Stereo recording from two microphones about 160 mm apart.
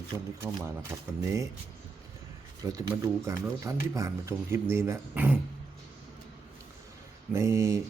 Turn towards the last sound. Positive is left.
turn(degrees=-20)  # may be behind; listen again after turning